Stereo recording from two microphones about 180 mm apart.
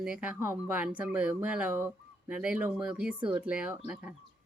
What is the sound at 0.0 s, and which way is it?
Speech, 5° right (ahead or behind).